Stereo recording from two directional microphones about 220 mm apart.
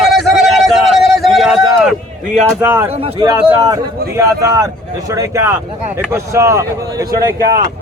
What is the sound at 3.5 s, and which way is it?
A man's voice, 15° right (ahead or behind).